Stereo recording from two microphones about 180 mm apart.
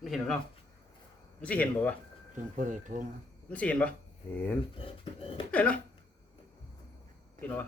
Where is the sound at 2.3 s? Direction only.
45° right (ahead or behind).